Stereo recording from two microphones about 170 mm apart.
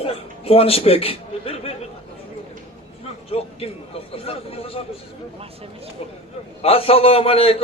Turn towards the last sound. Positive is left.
turn(degrees=35)  # may be behind; listen again after turning